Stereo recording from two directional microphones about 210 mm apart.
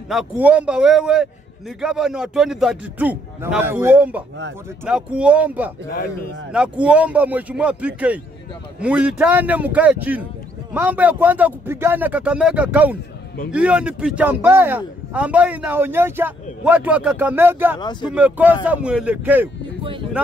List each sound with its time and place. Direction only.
0.1 s a man's voice: 5° right (ahead or behind)
5.9 s speech: 45° left (ahead or behind)
6.5 s a man's voice: 5° right (ahead or behind)
17.7 s speech: 20° left (ahead or behind)
18.1 s a man's voice: 5° right (ahead or behind)